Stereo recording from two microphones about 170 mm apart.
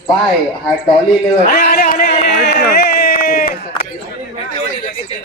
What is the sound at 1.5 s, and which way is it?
Speech, 70° left (ahead or behind).